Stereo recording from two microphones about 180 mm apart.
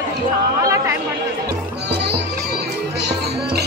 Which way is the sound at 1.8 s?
65° right (ahead or behind).